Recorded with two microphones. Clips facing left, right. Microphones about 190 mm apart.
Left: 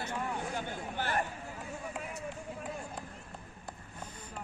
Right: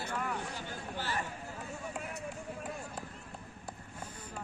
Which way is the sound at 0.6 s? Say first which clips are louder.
Left 4 dB; 55° left (ahead or behind).